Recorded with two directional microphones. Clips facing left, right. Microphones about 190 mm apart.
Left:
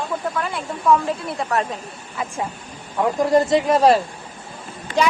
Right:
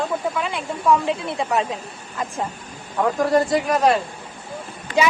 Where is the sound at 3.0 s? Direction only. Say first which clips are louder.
Left 1 dB; 20° left (ahead or behind).